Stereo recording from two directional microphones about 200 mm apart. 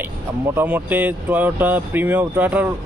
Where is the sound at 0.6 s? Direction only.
10° right (ahead or behind).